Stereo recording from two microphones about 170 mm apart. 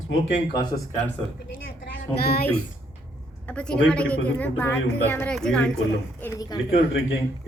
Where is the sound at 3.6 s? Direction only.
5° left (ahead or behind).